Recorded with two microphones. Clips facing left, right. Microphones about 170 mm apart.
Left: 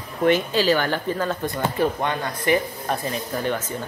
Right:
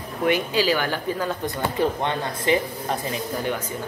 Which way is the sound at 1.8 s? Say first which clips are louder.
Even; 20° right (ahead or behind).